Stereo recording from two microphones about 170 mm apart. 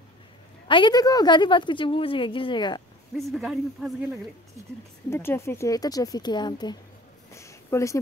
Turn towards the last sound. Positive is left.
turn(degrees=15)  # may be behind; listen again after turning